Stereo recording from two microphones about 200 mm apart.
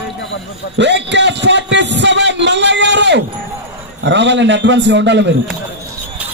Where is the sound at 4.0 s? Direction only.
60° right (ahead or behind).